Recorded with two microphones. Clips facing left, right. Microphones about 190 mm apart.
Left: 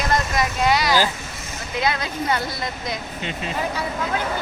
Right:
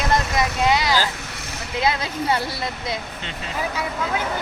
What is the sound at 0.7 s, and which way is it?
Speech, 20° right (ahead or behind).